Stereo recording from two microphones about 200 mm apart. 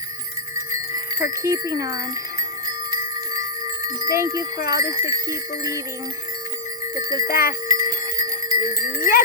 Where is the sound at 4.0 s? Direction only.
15° right (ahead or behind).